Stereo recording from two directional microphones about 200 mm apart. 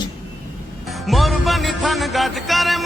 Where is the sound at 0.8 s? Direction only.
Centre (ahead or behind).